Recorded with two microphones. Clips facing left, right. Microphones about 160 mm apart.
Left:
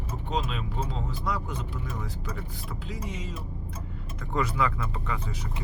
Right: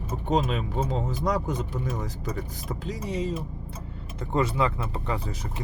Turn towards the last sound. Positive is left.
turn(degrees=-35)  # may be behind; listen again after turning